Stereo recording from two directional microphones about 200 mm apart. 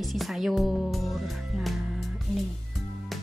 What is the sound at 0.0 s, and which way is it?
Music, centre (ahead or behind).